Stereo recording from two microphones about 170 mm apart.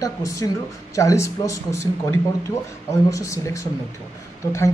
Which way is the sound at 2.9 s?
20° left (ahead or behind).